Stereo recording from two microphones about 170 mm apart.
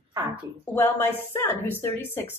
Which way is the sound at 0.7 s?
15° left (ahead or behind).